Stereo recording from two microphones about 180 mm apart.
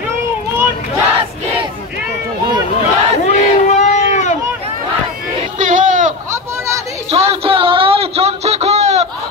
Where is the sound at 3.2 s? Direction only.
40° left (ahead or behind).